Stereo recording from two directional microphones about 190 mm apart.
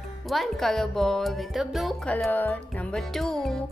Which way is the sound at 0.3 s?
Centre (ahead or behind).